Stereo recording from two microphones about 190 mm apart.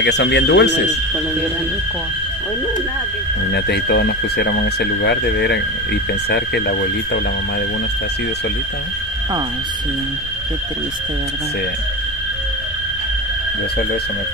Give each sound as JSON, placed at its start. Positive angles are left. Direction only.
{"t": 0.0, "sound": "speech", "side_deg": 65}
{"t": 3.5, "sound": "speech", "side_deg": 60}